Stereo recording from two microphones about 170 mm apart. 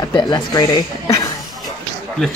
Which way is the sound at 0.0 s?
25° left (ahead or behind).